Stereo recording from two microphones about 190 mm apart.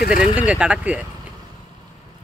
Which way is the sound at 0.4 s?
5° right (ahead or behind).